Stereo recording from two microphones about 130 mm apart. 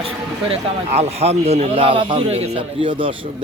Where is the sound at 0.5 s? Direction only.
55° right (ahead or behind).